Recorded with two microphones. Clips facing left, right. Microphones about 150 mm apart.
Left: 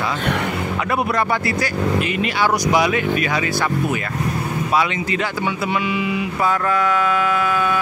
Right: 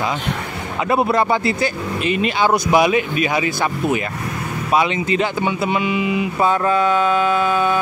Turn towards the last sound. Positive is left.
turn(degrees=-25)  # may be behind; listen again after turning